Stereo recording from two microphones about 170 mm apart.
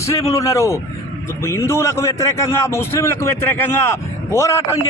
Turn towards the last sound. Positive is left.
turn(degrees=15)  # may be behind; listen again after turning